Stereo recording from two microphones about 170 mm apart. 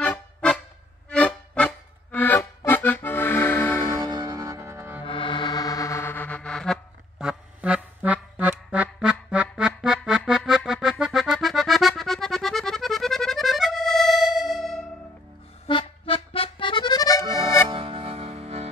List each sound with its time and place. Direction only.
0.0 s music: 10° left (ahead or behind)
3.9 s music: 20° right (ahead or behind)
5.0 s music: 30° left (ahead or behind); by 14.9 s centre (ahead or behind)
15.6 s accordion: 30° left (ahead or behind)
17.6 s music: 30° right (ahead or behind)